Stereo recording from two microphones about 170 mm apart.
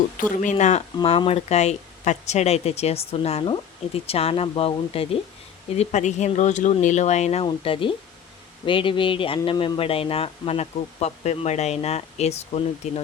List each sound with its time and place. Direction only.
0.2 s speech: 50° left (ahead or behind)
0.5 s speech: 40° left (ahead or behind)